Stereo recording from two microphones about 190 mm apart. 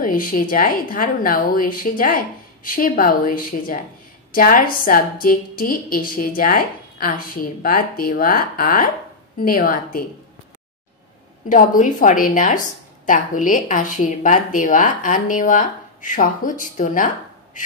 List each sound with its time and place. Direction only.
0.0 s a woman's voice: 45° left (ahead or behind)
11.4 s a woman's voice: 45° left (ahead or behind)